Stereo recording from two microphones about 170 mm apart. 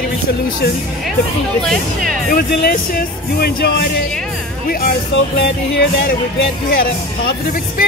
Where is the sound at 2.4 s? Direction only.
60° left (ahead or behind).